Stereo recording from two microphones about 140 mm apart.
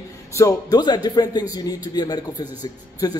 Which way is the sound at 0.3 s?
20° left (ahead or behind).